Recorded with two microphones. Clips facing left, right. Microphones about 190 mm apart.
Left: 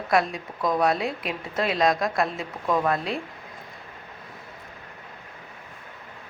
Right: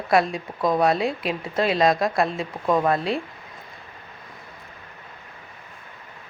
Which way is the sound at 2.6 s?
25° right (ahead or behind).